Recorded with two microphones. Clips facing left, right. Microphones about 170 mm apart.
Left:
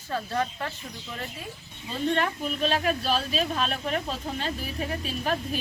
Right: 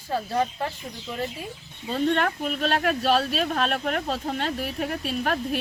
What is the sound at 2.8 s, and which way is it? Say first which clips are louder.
Speech: right 4 dB; 45° right (ahead or behind).